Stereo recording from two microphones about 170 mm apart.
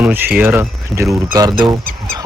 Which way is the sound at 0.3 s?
10° right (ahead or behind).